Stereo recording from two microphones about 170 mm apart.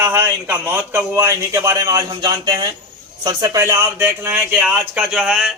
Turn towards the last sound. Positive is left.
turn(degrees=-5)  # may be behind; listen again after turning